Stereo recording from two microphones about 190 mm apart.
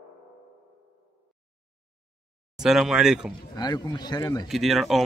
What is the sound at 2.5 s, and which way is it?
Speech, centre (ahead or behind).